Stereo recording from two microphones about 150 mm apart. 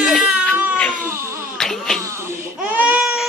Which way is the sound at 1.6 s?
5° left (ahead or behind).